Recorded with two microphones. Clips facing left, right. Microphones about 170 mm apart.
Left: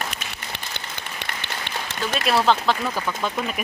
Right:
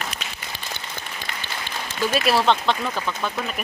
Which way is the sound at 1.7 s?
65° left (ahead or behind).